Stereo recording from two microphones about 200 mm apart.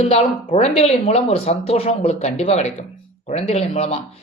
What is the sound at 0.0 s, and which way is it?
A man's voice, 30° left (ahead or behind).